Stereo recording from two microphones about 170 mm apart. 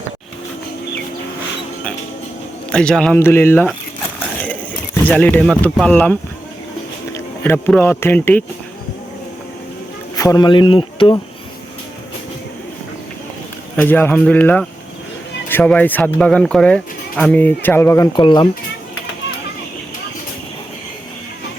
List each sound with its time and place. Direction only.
2.7 s a man's voice: 5° left (ahead or behind)
5.0 s speech: 10° left (ahead or behind)
10.2 s speech: 20° left (ahead or behind)
13.7 s speech: 10° left (ahead or behind)
18.2 s speech: 30° left (ahead or behind)